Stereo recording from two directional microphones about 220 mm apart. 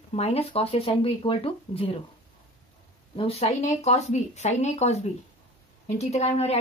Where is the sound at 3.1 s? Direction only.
25° left (ahead or behind).